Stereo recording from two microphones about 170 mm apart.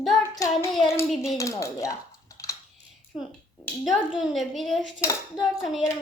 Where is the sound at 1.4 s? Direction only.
20° left (ahead or behind).